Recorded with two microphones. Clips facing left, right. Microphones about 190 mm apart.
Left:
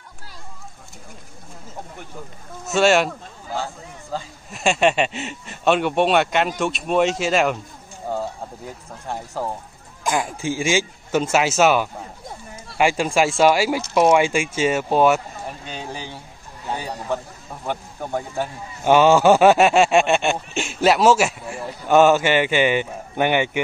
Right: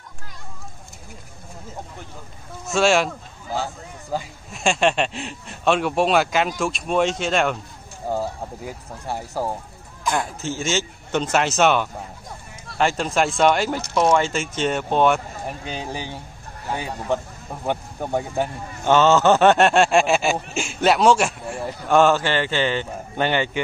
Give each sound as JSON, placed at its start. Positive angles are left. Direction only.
{"t": 2.6, "sound": "speech", "side_deg": 0}
{"t": 3.6, "sound": "speech", "side_deg": -15}
{"t": 4.5, "sound": "speech", "side_deg": 0}
{"t": 8.1, "sound": "speech", "side_deg": -10}
{"t": 10.4, "sound": "speech", "side_deg": 10}
{"t": 15.4, "sound": "speech", "side_deg": -15}
{"t": 17.6, "sound": "speech", "side_deg": -15}
{"t": 18.9, "sound": "speech", "side_deg": 10}